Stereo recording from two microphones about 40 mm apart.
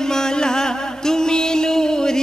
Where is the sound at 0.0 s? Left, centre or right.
Centre.